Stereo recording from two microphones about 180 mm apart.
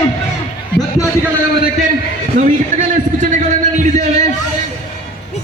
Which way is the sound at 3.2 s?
45° right (ahead or behind).